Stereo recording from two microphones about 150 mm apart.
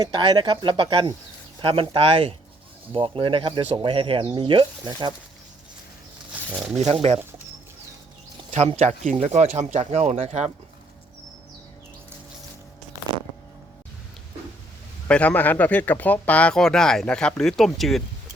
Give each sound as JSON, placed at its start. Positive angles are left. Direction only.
{"t": 0.0, "sound": "speech", "side_deg": -30}
{"t": 6.7, "sound": "speech", "side_deg": -45}
{"t": 8.4, "sound": "speech", "side_deg": -45}
{"t": 15.0, "sound": "speech", "side_deg": 10}